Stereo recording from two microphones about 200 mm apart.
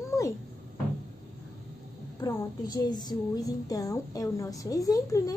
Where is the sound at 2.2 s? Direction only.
20° left (ahead or behind).